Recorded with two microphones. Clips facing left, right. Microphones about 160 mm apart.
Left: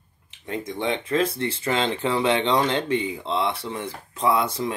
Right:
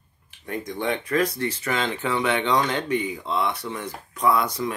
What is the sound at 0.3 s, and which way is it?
Speech, 25° left (ahead or behind).